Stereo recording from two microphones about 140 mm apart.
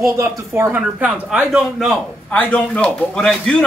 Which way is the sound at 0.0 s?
20° right (ahead or behind).